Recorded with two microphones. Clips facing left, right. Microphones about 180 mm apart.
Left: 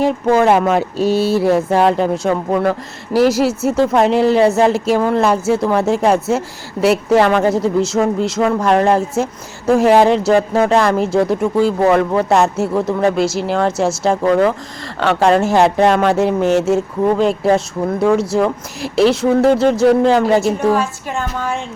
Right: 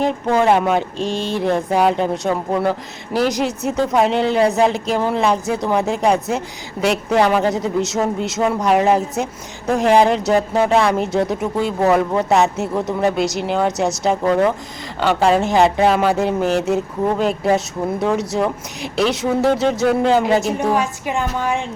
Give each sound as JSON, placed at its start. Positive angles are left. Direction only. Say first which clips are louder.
{"t": 0.0, "sound": "a woman's voice", "louder": "left 3 dB", "side_deg": 5}
{"t": 5.2, "sound": "speech", "louder": "left 4 dB", "side_deg": 5}
{"t": 20.6, "sound": "a woman's voice", "louder": "left 3 dB", "side_deg": -15}